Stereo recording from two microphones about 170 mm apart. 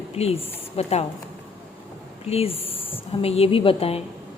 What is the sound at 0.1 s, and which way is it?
Speech, 35° left (ahead or behind).